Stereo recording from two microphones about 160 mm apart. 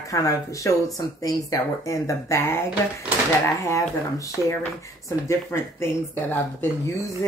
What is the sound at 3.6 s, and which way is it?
Speech, 20° left (ahead or behind).